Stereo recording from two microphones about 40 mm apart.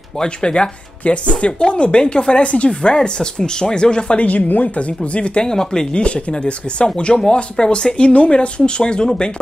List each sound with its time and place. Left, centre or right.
0.2 s speech: left
4.2 s speech: left
5.4 s speech: centre